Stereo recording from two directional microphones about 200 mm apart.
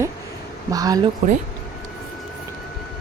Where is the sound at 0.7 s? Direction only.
20° right (ahead or behind).